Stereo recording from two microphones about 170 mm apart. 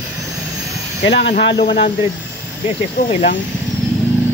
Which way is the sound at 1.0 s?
80° left.